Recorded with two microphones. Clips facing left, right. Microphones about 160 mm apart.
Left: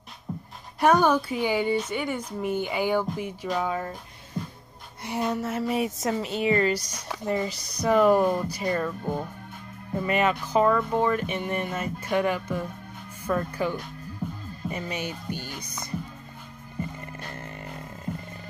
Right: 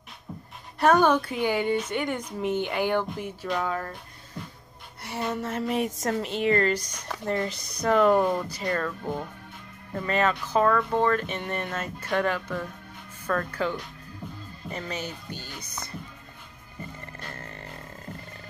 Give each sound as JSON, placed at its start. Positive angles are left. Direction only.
{"t": 0.7, "sound": "a woman's voice", "side_deg": 10}
{"t": 5.0, "sound": "a woman's voice", "side_deg": 15}
{"t": 17.2, "sound": "music", "side_deg": 20}